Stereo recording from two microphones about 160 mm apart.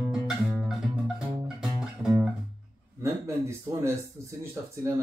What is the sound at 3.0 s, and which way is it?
Speech, 20° right (ahead or behind).